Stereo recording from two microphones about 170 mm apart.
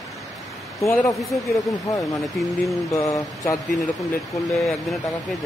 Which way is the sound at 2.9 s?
20° left (ahead or behind).